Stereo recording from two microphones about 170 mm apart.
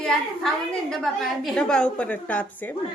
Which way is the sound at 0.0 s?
5° left (ahead or behind).